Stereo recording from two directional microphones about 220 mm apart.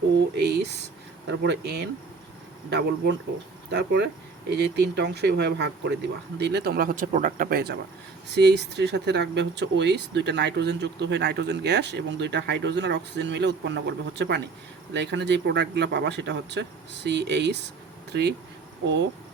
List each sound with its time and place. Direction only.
0.3 s speech: 50° right (ahead or behind)